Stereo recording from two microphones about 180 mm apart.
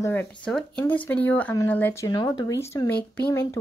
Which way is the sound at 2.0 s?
20° left (ahead or behind).